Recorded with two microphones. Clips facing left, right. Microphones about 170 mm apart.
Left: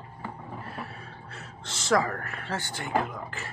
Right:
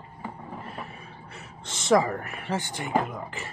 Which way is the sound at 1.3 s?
20° right (ahead or behind).